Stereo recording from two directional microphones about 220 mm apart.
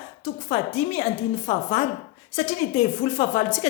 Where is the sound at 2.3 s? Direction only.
25° left (ahead or behind).